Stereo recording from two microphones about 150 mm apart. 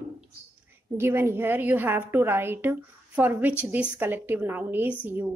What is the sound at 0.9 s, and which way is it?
A woman's voice, 15° right (ahead or behind).